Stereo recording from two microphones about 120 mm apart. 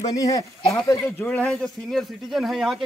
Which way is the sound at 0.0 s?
30° left (ahead or behind).